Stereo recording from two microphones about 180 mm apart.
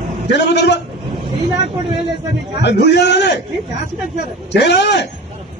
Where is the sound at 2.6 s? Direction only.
70° left (ahead or behind).